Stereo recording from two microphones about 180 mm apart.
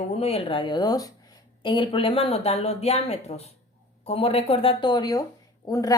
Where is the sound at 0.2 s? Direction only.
35° left (ahead or behind).